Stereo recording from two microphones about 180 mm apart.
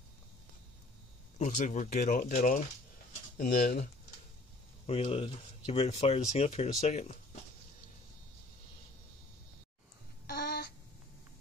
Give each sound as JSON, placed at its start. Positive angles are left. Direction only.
{"t": 1.4, "sound": "speech", "side_deg": 40}
{"t": 4.8, "sound": "speech", "side_deg": 35}
{"t": 10.2, "sound": "a sound", "side_deg": 60}